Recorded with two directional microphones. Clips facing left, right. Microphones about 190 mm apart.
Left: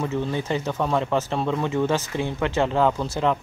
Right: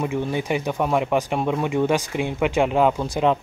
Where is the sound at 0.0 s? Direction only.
15° right (ahead or behind).